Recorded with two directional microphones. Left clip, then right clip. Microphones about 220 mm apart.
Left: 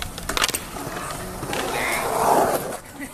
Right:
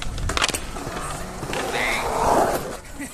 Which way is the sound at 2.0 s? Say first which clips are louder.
Left 2 dB; 25° left (ahead or behind).